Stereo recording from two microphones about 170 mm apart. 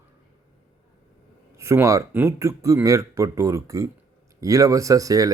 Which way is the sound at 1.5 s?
15° right (ahead or behind).